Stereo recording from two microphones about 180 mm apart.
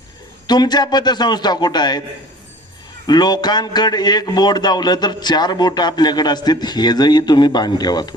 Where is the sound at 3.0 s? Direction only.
25° left (ahead or behind).